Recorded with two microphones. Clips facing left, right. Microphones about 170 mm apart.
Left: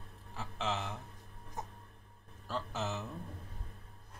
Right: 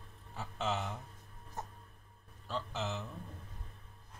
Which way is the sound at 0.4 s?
Centre (ahead or behind).